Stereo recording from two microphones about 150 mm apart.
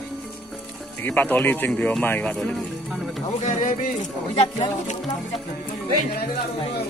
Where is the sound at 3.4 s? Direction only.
55° left (ahead or behind).